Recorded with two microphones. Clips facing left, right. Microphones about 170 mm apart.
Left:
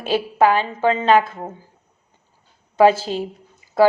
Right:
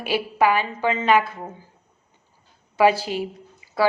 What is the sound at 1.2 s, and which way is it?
Speech, 20° left (ahead or behind).